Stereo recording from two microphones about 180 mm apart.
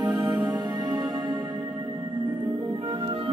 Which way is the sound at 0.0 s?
20° right (ahead or behind).